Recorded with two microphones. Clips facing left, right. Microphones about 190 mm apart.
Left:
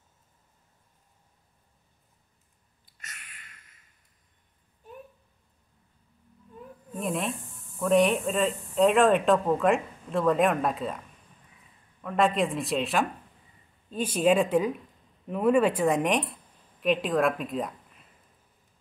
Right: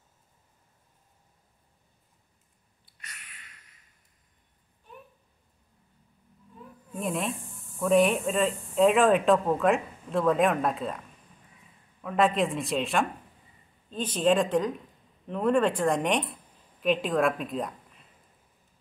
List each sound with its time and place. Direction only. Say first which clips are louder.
7.0 s speech: even; centre (ahead or behind)
12.0 s a woman's voice: even; centre (ahead or behind)